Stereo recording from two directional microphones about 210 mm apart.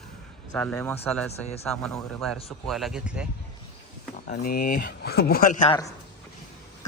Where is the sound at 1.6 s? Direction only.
5° left (ahead or behind).